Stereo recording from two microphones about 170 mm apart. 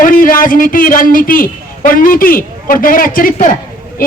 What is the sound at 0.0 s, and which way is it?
A man's voice, 55° left (ahead or behind).